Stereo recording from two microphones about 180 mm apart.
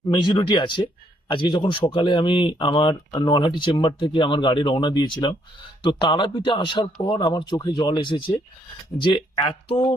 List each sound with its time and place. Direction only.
0.1 s speech: 25° left (ahead or behind)